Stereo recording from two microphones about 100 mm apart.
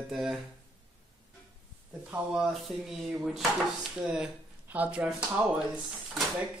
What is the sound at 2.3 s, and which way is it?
Speech, centre (ahead or behind).